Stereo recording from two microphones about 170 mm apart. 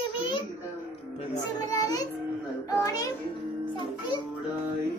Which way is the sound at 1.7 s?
20° left (ahead or behind).